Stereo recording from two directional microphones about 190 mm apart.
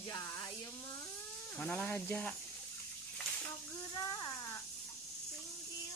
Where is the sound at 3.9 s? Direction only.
20° left (ahead or behind).